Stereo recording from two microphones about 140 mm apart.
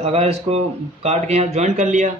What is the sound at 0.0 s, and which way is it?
Speech, 45° right (ahead or behind).